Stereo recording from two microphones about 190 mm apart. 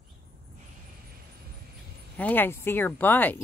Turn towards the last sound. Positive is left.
turn(degrees=10)  # may be behind; listen again after turning